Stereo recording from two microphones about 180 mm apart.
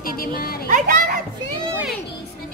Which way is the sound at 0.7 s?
50° right (ahead or behind).